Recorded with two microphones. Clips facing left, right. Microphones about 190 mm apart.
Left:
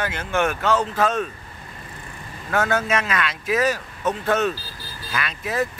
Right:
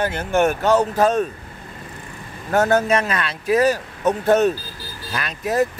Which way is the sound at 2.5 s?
40° right (ahead or behind).